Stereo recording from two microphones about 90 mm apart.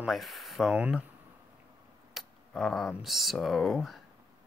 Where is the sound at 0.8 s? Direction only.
10° right (ahead or behind).